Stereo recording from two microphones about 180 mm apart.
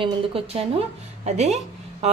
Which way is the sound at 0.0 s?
30° right (ahead or behind).